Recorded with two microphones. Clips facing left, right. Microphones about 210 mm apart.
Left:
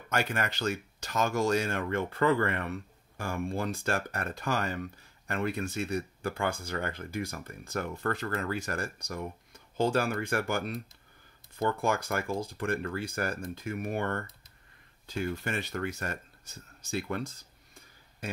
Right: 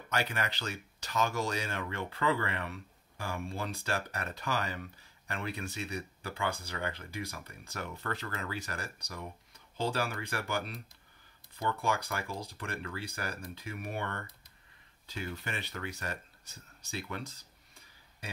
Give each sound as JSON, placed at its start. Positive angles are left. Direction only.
{"t": 0.1, "sound": "speech", "side_deg": 50}